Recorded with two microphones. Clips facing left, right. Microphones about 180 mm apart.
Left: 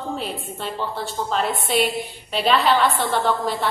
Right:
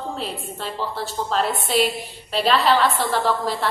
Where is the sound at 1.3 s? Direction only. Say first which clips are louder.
Right 1 dB; centre (ahead or behind).